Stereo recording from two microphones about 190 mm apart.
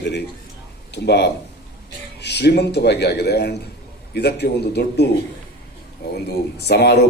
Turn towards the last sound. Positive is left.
turn(degrees=60)  # may be behind; listen again after turning